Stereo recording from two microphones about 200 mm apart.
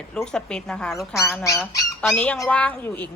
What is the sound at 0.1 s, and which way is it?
Speech, 5° left (ahead or behind).